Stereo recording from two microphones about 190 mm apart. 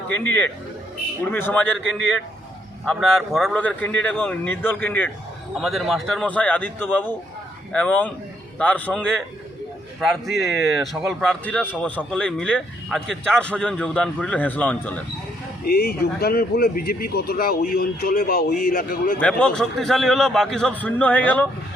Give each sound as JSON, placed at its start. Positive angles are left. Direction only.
{"t": 1.2, "sound": "a man's voice", "side_deg": 10}
{"t": 2.8, "sound": "a man's voice", "side_deg": 0}
{"t": 15.6, "sound": "speech", "side_deg": 55}
{"t": 19.2, "sound": "a man's voice", "side_deg": 5}